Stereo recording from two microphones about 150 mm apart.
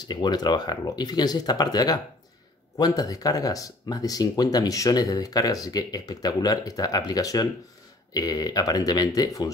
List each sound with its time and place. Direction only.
0.1 s speech: 30° left (ahead or behind)